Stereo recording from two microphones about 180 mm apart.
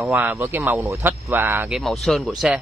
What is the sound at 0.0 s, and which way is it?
Speech, 15° right (ahead or behind).